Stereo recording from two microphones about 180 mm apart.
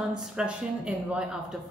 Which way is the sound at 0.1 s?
5° right (ahead or behind).